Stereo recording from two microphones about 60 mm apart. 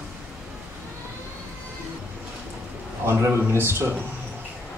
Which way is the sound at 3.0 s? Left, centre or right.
Right.